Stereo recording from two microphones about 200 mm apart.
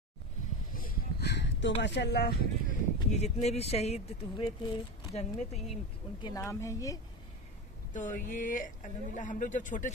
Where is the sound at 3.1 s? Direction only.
35° left (ahead or behind).